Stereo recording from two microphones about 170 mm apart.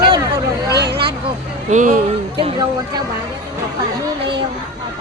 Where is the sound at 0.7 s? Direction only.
75° right (ahead or behind).